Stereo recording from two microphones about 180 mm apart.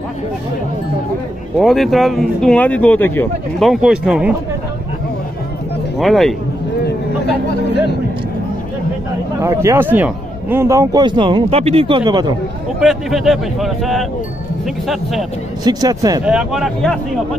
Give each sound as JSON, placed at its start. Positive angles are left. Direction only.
{"t": 1.6, "sound": "speech", "side_deg": 0}
{"t": 5.9, "sound": "speech", "side_deg": 0}
{"t": 9.4, "sound": "a man's voice", "side_deg": -15}
{"t": 12.8, "sound": "speech", "side_deg": 0}
{"t": 15.6, "sound": "a man's voice", "side_deg": -20}
{"t": 16.3, "sound": "speech", "side_deg": -5}